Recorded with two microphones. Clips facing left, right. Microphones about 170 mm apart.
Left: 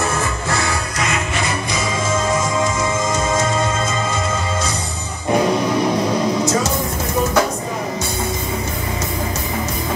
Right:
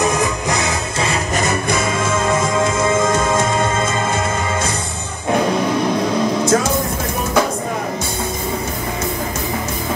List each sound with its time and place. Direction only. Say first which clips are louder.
0.0 s music: right 4 dB; 15° right (ahead or behind)
1.0 s music: right 3 dB; 40° right (ahead or behind); by 4.2 s 55° right (ahead or behind)
6.4 s music: right 3 dB; 55° right (ahead or behind)